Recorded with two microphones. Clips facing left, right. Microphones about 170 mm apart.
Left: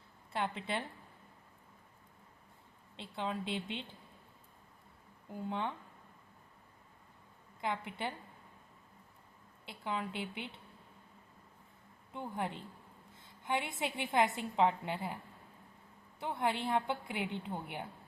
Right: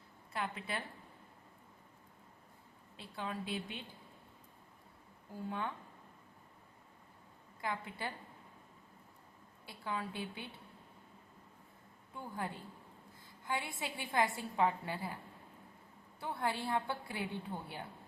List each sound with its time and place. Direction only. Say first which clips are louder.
0.3 s a woman's voice: left 4 dB; 25° left (ahead or behind)
2.9 s a woman's voice: left 4 dB; 25° left (ahead or behind)
5.3 s a woman's voice: left 2 dB; 20° left (ahead or behind)
7.6 s a woman's voice: left 3 dB; 20° left (ahead or behind)
9.6 s a woman's voice: left 2 dB; 20° left (ahead or behind)
12.1 s a woman's voice: left 3 dB; 20° left (ahead or behind)
16.2 s a woman's voice: left 3 dB; 20° left (ahead or behind)